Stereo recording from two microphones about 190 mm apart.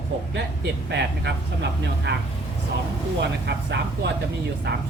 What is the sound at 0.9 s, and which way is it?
Speech, 65° right (ahead or behind).